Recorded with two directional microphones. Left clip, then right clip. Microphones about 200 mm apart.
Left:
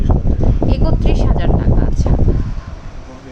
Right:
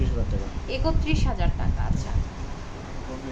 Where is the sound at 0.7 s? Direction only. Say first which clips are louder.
Left 7 dB; 35° left (ahead or behind).